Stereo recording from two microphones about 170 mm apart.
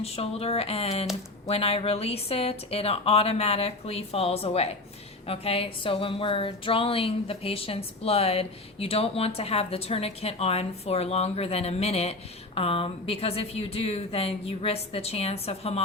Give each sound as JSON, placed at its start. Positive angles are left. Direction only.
{"t": 0.0, "sound": "a woman's voice", "side_deg": 35}